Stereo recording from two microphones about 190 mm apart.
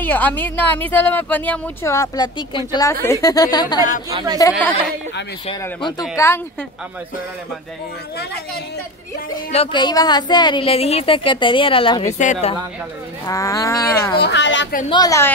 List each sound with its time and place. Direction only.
0.0 s a woman's voice: 10° left (ahead or behind)
4.1 s a woman's voice: 25° right (ahead or behind)
4.4 s a woman's voice: 15° left (ahead or behind)
9.5 s a woman's voice: 30° left (ahead or behind)
13.3 s a woman's voice: 15° left (ahead or behind)
14.1 s speech: 65° left (ahead or behind)
14.9 s a woman's voice: 20° left (ahead or behind)